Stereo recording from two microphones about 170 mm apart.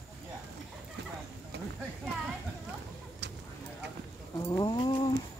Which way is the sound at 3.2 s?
85° right.